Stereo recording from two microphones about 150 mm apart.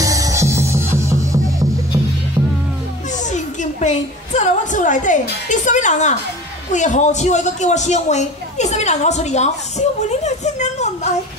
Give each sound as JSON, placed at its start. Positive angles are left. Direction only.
{"t": 0.0, "sound": "music", "side_deg": -20}
{"t": 3.1, "sound": "a sound", "side_deg": 55}
{"t": 6.7, "sound": "a woman's voice", "side_deg": 55}